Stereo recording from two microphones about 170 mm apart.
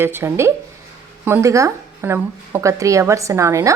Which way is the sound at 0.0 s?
15° right (ahead or behind).